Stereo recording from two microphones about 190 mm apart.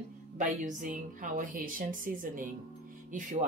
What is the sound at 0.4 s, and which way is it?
A woman's voice, 40° right (ahead or behind).